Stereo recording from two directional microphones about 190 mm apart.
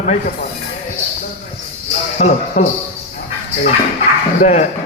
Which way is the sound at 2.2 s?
40° left (ahead or behind).